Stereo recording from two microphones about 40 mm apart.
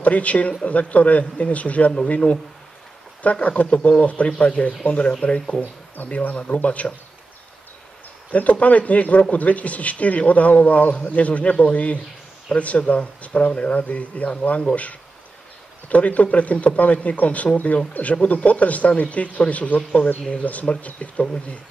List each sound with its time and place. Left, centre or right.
0.0 s speech: left
6.0 s speech: left
6.3 s speech: left
8.3 s speech: left
20.4 s speech: left